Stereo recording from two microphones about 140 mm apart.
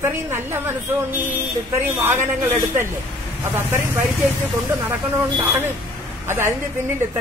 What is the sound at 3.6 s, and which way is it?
A woman's voice, 15° right (ahead or behind).